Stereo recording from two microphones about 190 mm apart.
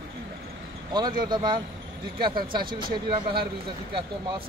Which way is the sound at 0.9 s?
25° right (ahead or behind).